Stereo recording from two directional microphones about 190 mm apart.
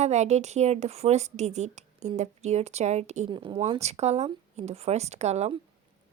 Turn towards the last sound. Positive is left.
turn(degrees=-35)  # may be behind; listen again after turning